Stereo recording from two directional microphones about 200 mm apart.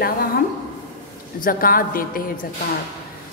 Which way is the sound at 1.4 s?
45° left (ahead or behind).